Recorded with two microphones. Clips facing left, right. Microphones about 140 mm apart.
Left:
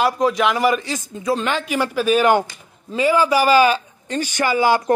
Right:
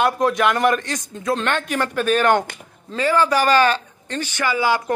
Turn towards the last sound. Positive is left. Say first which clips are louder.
# left 3 dB
turn(degrees=40)  # may be behind; listen again after turning